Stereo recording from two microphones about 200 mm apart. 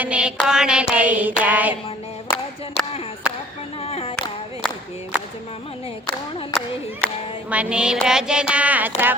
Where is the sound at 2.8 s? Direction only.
30° left (ahead or behind).